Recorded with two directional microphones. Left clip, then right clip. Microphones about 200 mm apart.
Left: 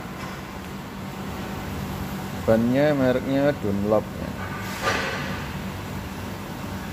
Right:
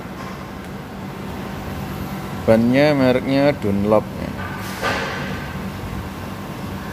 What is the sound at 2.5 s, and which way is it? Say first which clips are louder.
Speech: right 5 dB; 15° right (ahead or behind).